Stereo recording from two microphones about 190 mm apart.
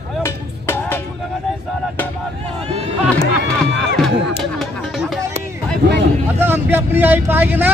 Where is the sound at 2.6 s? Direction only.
35° right (ahead or behind).